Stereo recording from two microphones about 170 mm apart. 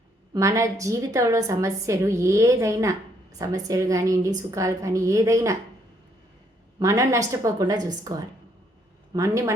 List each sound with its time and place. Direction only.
0.3 s a woman's voice: 20° right (ahead or behind)
6.7 s a woman's voice: 20° right (ahead or behind)
9.1 s a woman's voice: 20° right (ahead or behind)